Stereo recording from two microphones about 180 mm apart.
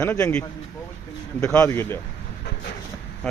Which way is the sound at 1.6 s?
15° left (ahead or behind).